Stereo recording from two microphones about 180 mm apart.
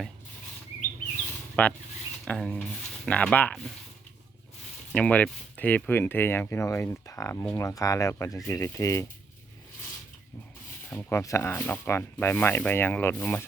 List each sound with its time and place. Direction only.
1.6 s speech: 10° left (ahead or behind)
4.9 s speech: 10° left (ahead or behind)
10.8 s speech: 10° left (ahead or behind)